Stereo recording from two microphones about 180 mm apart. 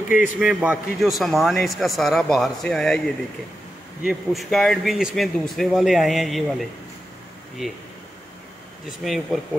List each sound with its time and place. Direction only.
0.2 s a man's voice: 5° right (ahead or behind)
4.0 s a man's voice: centre (ahead or behind)
9.0 s a man's voice: centre (ahead or behind)